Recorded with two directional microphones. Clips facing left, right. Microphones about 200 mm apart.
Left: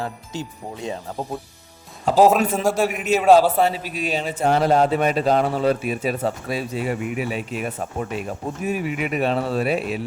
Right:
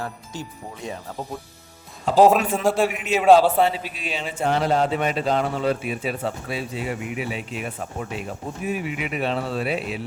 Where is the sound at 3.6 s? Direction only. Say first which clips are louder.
Left 3 dB; 40° left (ahead or behind).